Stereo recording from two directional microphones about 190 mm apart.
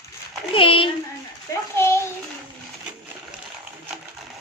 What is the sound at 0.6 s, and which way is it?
Speech, 25° left (ahead or behind).